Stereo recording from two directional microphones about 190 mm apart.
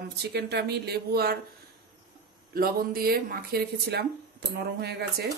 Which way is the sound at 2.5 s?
50° right (ahead or behind).